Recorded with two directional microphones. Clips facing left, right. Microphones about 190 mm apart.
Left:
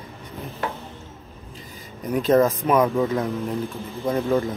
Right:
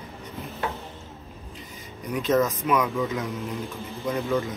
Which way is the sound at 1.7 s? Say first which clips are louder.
Left 5 dB; 35° left (ahead or behind).